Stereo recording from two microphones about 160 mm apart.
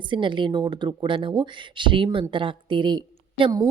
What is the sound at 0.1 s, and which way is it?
A woman's voice, 30° right (ahead or behind).